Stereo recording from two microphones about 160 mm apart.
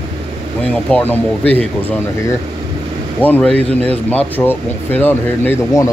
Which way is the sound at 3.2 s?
10° left (ahead or behind).